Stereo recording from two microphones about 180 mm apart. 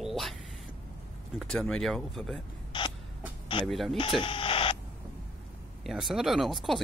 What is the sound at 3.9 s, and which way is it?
Printer, 30° left (ahead or behind).